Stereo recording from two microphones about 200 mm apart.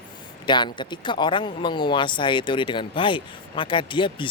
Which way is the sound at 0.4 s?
20° left (ahead or behind).